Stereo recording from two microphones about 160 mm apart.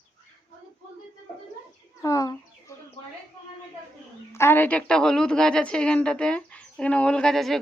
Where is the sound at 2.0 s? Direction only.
20° left (ahead or behind).